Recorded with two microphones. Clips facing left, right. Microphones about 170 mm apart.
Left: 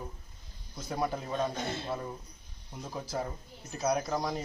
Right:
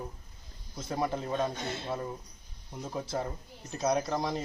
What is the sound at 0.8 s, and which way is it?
Speech, centre (ahead or behind).